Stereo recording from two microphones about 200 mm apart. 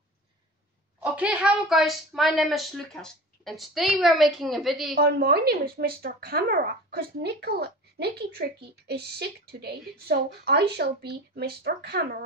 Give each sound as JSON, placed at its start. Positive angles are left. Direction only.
{"t": 1.1, "sound": "a woman's voice", "side_deg": -5}
{"t": 4.9, "sound": "speech", "side_deg": -50}